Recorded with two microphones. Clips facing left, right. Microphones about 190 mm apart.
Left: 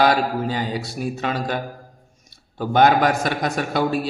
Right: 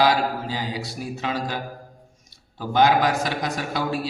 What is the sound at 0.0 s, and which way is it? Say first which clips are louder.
A man's voice: left 2 dB; 55° left (ahead or behind).